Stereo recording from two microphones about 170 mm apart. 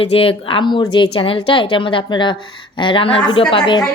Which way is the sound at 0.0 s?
35° left (ahead or behind).